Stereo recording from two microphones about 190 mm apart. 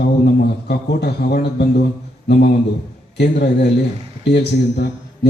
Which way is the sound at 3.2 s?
60° left (ahead or behind).